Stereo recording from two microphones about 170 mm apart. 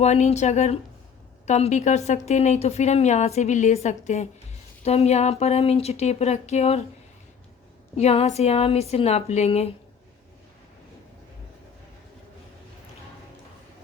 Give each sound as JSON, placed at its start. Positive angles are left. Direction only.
{"t": 0.0, "sound": "a woman's voice", "side_deg": 40}
{"t": 7.9, "sound": "a woman's voice", "side_deg": 35}